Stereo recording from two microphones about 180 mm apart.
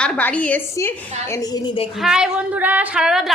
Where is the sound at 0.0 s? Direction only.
5° left (ahead or behind).